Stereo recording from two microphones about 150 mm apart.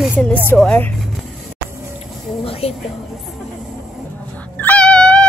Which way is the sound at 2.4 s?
40° left (ahead or behind).